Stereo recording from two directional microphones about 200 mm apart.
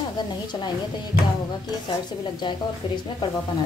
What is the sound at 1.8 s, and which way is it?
Speech, 25° left (ahead or behind).